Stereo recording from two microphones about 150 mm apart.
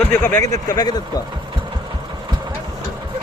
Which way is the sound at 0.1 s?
15° left (ahead or behind).